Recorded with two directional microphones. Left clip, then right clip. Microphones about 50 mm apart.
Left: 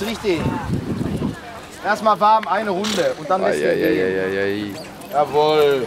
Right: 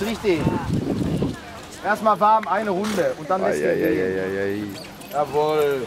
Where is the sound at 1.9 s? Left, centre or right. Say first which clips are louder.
Left 2 dB; centre.